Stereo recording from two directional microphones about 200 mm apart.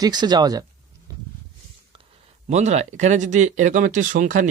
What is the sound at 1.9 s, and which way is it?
Speech, 35° right (ahead or behind).